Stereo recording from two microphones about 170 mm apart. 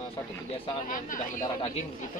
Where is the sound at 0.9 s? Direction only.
50° left (ahead or behind).